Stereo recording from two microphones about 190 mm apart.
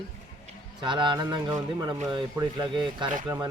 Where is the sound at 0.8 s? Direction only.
25° right (ahead or behind).